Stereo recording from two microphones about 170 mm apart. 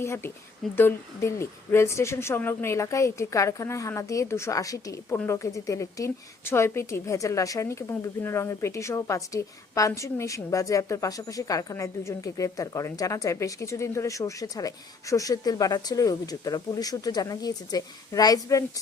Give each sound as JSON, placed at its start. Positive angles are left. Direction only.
{"t": 0.0, "sound": "speech", "side_deg": 15}